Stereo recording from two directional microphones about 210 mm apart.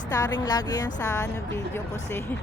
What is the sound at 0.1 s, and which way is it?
A woman's voice, 15° left (ahead or behind).